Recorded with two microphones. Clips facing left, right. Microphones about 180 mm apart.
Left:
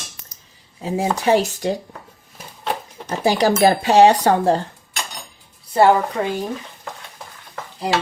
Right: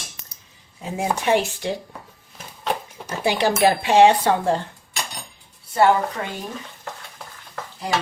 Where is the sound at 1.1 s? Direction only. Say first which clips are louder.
Left 2 dB; 35° left (ahead or behind).